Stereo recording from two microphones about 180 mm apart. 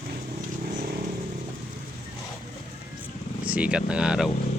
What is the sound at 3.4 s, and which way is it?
Speech, 5° right (ahead or behind).